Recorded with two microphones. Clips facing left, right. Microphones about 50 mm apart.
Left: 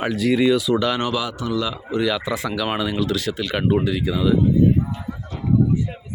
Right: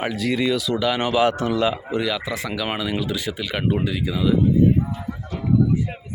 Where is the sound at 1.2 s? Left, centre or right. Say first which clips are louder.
Right 5 dB; right.